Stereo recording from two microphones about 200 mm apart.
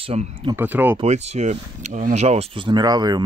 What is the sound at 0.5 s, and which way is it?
Speech, 10° right (ahead or behind).